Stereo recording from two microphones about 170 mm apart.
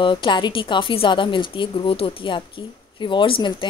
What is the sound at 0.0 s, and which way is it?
A woman's voice, 30° left (ahead or behind).